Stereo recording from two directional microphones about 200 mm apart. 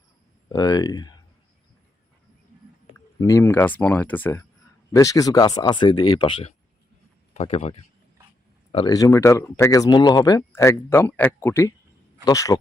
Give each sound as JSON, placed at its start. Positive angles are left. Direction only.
{"t": 0.4, "sound": "speech", "side_deg": 20}
{"t": 3.2, "sound": "speech", "side_deg": 15}